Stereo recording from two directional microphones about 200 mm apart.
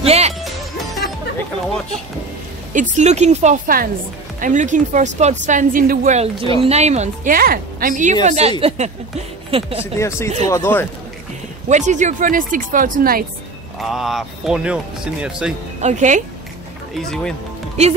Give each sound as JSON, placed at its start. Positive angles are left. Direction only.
{"t": 0.0, "sound": "music", "side_deg": -30}
{"t": 2.7, "sound": "a woman's voice", "side_deg": -35}
{"t": 9.9, "sound": "speech", "side_deg": 15}
{"t": 11.7, "sound": "a woman's voice", "side_deg": -35}
{"t": 13.7, "sound": "speech", "side_deg": 0}
{"t": 15.8, "sound": "a woman's voice", "side_deg": -35}
{"t": 16.9, "sound": "speech", "side_deg": 5}